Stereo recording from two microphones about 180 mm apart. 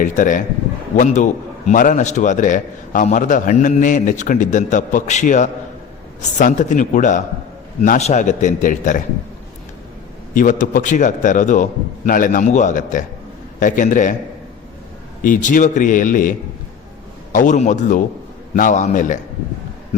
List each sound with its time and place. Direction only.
0.0 s a man's voice: 45° left (ahead or behind)
10.3 s a man's voice: 45° left (ahead or behind)
15.2 s a man's voice: 45° left (ahead or behind)
17.3 s a man's voice: 45° left (ahead or behind)